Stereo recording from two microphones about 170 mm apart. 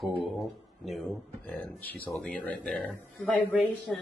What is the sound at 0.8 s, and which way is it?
Speech, centre (ahead or behind).